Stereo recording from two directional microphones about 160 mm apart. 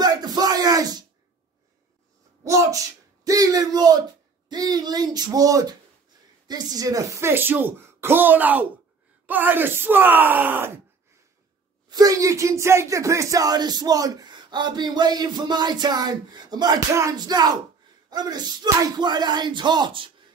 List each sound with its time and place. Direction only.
0.0 s bellow: 25° right (ahead or behind)
2.4 s speech: 20° right (ahead or behind)
11.9 s speech: 20° right (ahead or behind)